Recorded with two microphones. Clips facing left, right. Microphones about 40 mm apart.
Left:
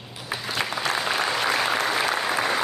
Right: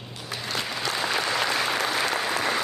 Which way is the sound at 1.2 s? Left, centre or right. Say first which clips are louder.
Left 2 dB; centre.